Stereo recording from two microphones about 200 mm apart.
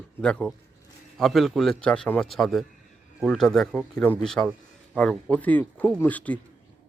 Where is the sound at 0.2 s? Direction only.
5° left (ahead or behind).